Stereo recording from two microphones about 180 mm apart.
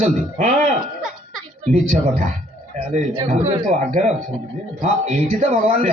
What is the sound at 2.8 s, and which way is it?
A man's voice, 35° right (ahead or behind).